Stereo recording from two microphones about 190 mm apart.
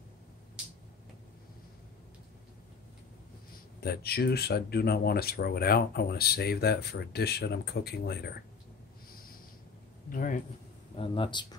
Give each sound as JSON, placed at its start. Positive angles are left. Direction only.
{"t": 3.8, "sound": "speech", "side_deg": 55}
{"t": 10.0, "sound": "a man's voice", "side_deg": 45}
{"t": 11.0, "sound": "speech", "side_deg": 25}